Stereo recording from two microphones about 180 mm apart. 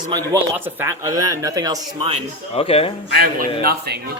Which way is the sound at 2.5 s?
35° left (ahead or behind).